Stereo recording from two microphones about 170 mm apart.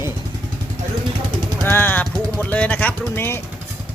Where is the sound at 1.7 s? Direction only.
10° left (ahead or behind).